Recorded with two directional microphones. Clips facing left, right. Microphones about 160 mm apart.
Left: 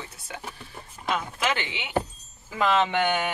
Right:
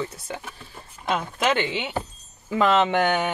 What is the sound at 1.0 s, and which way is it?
Speech, 30° right (ahead or behind).